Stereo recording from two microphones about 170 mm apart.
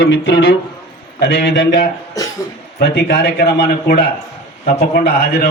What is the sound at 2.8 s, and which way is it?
A man's voice, 70° left (ahead or behind).